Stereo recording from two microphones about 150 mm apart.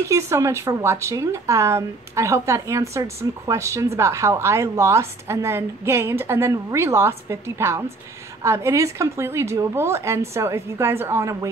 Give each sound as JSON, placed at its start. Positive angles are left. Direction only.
{"t": 0.1, "sound": "a woman's voice", "side_deg": -20}